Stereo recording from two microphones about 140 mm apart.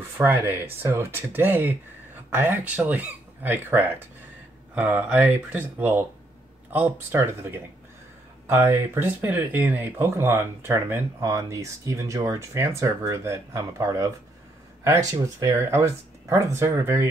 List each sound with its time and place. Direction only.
0.2 s speech: 15° right (ahead or behind)